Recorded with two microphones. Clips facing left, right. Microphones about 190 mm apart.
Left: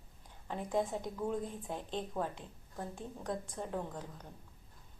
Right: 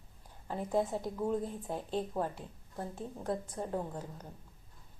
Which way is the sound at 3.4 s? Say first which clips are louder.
Right 3 dB; 10° right (ahead or behind).